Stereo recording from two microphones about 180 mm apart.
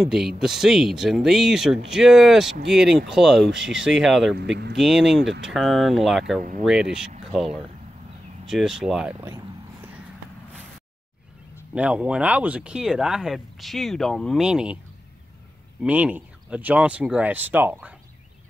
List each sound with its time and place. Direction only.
0.0 s speech: centre (ahead or behind)
4.4 s speech: 65° right (ahead or behind)
4.7 s speech: centre (ahead or behind)
11.7 s speech: 5° right (ahead or behind)
15.8 s speech: 10° right (ahead or behind)